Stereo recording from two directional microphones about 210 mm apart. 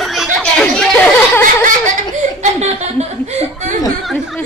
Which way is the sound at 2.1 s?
30° right (ahead or behind).